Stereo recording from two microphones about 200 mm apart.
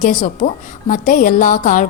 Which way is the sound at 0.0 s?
40° left (ahead or behind).